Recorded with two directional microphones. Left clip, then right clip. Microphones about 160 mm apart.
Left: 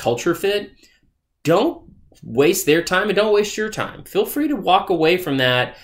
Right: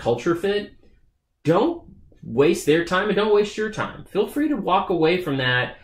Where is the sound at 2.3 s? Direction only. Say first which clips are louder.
Left 2 dB; 15° left (ahead or behind).